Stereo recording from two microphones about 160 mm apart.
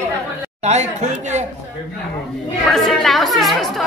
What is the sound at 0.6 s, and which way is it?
Speech, 45° right (ahead or behind).